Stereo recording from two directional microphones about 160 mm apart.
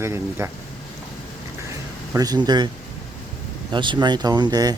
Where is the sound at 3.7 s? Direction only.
30° right (ahead or behind).